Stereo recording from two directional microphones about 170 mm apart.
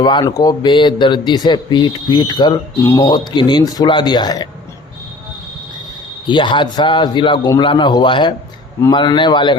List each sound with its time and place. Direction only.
0.0 s a man's voice: 25° left (ahead or behind)
6.2 s a man's voice: 30° left (ahead or behind)